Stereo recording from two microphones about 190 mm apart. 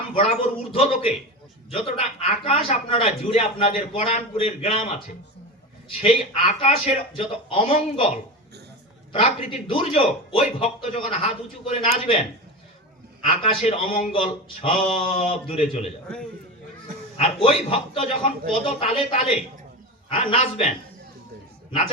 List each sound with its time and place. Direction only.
0.2 s a man's voice: 30° left (ahead or behind)
6.0 s a man's voice: 30° left (ahead or behind)
9.1 s a man's voice: 30° left (ahead or behind)
13.2 s a man's voice: 30° left (ahead or behind)
17.2 s a man's voice: 30° left (ahead or behind)